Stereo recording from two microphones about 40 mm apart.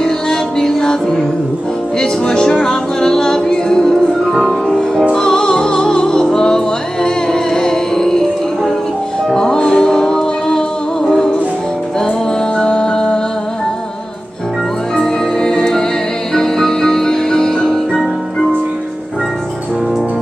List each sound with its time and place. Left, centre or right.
0.0 s music: centre
9.3 s music: centre
12.5 s music: left
15.0 s music: centre